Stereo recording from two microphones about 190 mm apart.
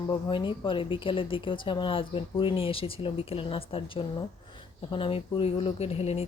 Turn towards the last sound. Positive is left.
turn(degrees=30)  # may be behind; listen again after turning